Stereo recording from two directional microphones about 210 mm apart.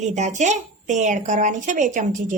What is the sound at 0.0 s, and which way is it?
A woman's voice, 35° right (ahead or behind).